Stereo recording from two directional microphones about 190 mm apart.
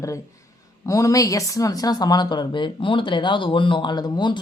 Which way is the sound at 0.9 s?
15° left (ahead or behind).